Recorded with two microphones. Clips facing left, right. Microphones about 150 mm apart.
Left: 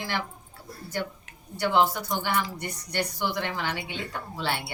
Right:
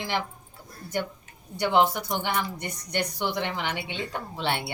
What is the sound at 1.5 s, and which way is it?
A woman's voice, 20° right (ahead or behind).